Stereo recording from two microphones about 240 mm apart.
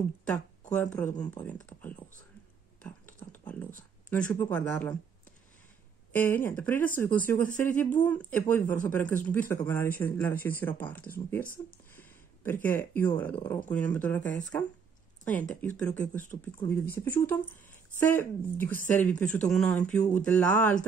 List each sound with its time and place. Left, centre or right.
0.3 s a sound: centre
1.2 s speech: centre
2.8 s a sound: centre
4.1 s speech: centre
6.1 s speech: centre
12.6 s speech: centre